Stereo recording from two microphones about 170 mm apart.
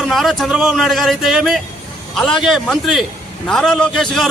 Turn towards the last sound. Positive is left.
turn(degrees=0)  # may be behind; listen again after turning